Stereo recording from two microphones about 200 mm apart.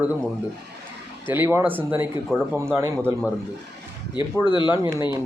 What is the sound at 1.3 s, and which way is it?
Speech, 10° right (ahead or behind).